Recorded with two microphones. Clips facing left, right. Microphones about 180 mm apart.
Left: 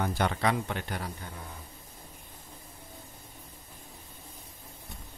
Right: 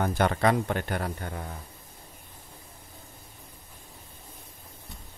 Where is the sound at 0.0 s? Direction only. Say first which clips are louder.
Right 4 dB; 50° right (ahead or behind).